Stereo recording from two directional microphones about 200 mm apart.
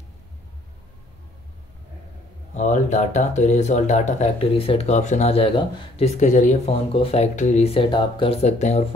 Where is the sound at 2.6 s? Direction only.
35° left (ahead or behind).